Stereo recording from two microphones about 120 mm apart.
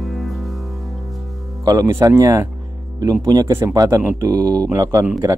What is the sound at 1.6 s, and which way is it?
Speech, 30° right (ahead or behind).